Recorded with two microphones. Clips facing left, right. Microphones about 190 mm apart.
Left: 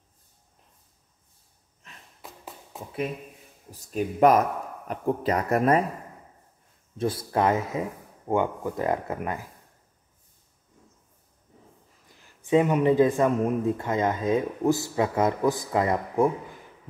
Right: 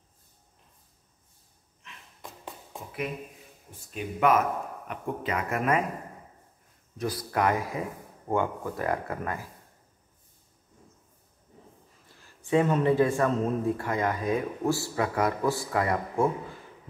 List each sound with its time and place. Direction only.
2.2 s tap: 5° left (ahead or behind)
3.7 s speech: 40° left (ahead or behind)
7.0 s speech: 25° left (ahead or behind)
12.4 s speech: 15° left (ahead or behind)